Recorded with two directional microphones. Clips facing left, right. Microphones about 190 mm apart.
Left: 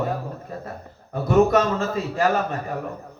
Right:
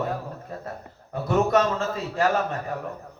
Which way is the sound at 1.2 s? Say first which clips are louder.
Left 4 dB; 10° left (ahead or behind).